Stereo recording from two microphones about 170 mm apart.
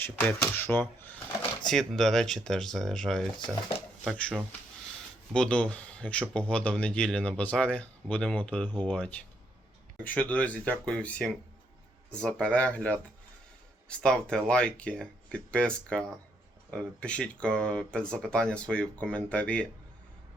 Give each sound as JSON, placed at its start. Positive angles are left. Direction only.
{"t": 0.0, "sound": "speech", "side_deg": 10}
{"t": 5.3, "sound": "speech", "side_deg": 5}